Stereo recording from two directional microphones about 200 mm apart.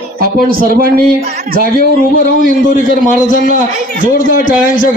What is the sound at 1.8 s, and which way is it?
A man's voice, 45° left (ahead or behind).